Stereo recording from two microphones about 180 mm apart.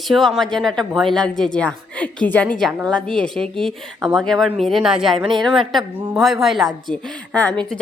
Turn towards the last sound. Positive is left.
turn(degrees=5)  # may be behind; listen again after turning